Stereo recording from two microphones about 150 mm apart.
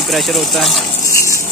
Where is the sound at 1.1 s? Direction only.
20° left (ahead or behind).